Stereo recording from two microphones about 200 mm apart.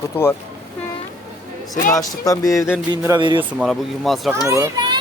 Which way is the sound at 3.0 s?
20° right (ahead or behind).